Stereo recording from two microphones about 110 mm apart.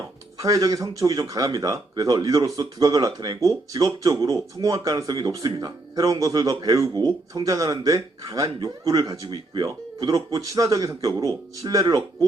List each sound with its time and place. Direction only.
0.3 s speech: 35° right (ahead or behind)